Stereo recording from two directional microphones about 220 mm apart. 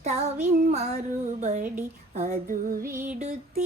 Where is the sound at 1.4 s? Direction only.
35° right (ahead or behind).